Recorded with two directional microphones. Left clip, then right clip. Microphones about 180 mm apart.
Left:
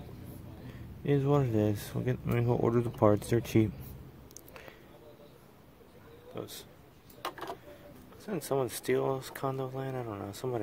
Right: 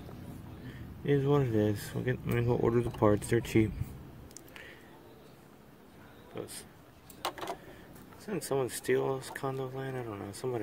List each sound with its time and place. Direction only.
1.0 s speech: 15° left (ahead or behind)
6.4 s speech: 15° left (ahead or behind)
7.2 s a sound: 5° right (ahead or behind)
8.3 s speech: 15° left (ahead or behind)